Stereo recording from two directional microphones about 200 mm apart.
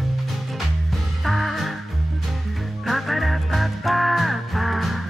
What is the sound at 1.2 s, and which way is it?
Music, centre (ahead or behind).